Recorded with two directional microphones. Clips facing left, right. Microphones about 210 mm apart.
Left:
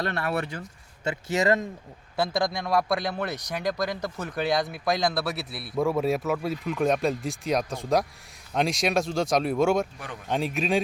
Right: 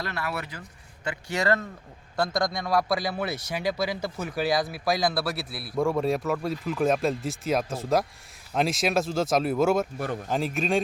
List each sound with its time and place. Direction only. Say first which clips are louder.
0.0 s speech: left 4 dB; 30° left (ahead or behind)
2.1 s speech: even; 5° left (ahead or behind)
10.0 s speech: right 9 dB; 40° right (ahead or behind)
10.2 s speech: left 2 dB; centre (ahead or behind)